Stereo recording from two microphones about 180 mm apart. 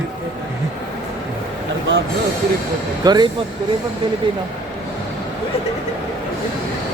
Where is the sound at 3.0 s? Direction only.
25° right (ahead or behind).